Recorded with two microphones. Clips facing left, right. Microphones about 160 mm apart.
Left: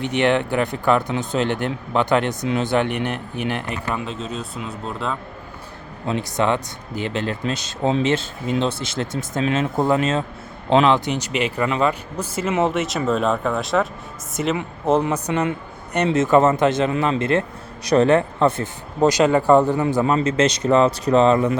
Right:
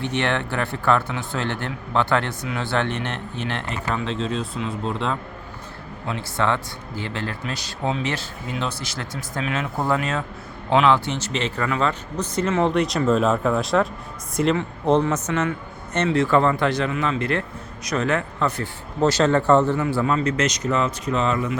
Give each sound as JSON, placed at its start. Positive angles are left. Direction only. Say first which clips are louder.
{"t": 0.0, "sound": "a man's voice", "louder": "left 5 dB", "side_deg": 15}
{"t": 6.1, "sound": "a man's voice", "louder": "left 3 dB", "side_deg": 20}